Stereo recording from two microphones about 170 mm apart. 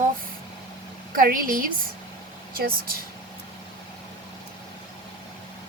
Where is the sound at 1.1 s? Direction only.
55° right (ahead or behind).